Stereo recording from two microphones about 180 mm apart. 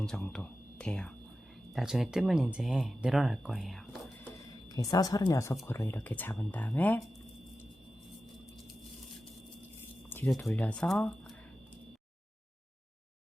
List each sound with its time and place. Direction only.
0.0 s speech: 5° left (ahead or behind)
4.7 s speech: 20° left (ahead or behind)
10.1 s a sound: 10° left (ahead or behind)
10.4 s speech: 10° left (ahead or behind)